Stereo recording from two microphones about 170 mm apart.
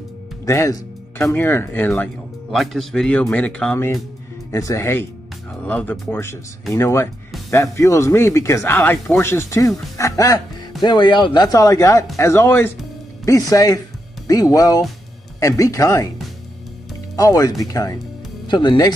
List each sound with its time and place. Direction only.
0.5 s speech: 15° left (ahead or behind)
17.1 s speech: 20° left (ahead or behind)